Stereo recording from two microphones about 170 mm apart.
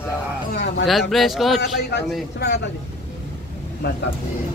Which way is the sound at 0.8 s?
Centre (ahead or behind).